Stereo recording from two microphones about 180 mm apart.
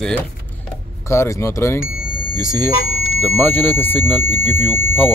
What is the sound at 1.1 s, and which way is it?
Speech, 15° left (ahead or behind).